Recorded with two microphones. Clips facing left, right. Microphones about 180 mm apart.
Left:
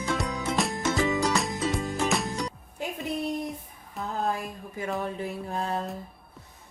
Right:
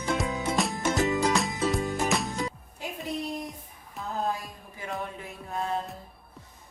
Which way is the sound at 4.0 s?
Centre (ahead or behind).